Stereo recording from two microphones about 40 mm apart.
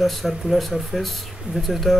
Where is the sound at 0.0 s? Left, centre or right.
Centre.